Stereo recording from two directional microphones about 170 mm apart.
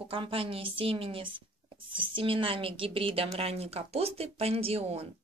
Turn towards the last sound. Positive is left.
turn(degrees=-35)  # may be behind; listen again after turning